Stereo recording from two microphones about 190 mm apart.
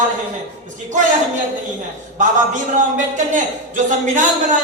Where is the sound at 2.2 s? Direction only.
40° right (ahead or behind).